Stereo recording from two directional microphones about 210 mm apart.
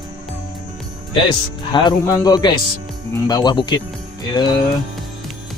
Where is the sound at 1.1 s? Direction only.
20° left (ahead or behind).